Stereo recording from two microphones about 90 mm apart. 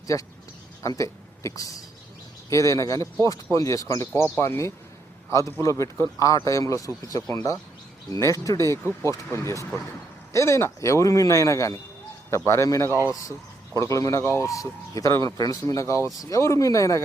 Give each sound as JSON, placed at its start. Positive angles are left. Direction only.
{"t": 0.1, "sound": "a man's voice", "side_deg": 35}